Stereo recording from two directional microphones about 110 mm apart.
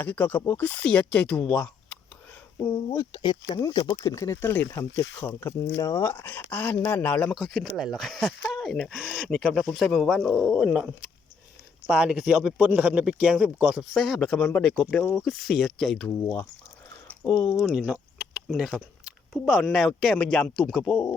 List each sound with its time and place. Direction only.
0.0 s speech: 15° left (ahead or behind)
2.6 s speech: 25° left (ahead or behind)
3.0 s speech: 45° left (ahead or behind)
3.6 s speech: 35° left (ahead or behind); by 7.3 s 15° left (ahead or behind)
7.3 s speech: centre (ahead or behind)
13.9 s speech: centre (ahead or behind)
17.2 s speech: 40° left (ahead or behind)
17.5 s speech: centre (ahead or behind)
17.9 s a sound: 10° right (ahead or behind)
19.3 s speech: centre (ahead or behind)